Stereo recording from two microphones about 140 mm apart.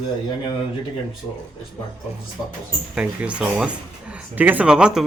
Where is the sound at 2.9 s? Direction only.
10° right (ahead or behind).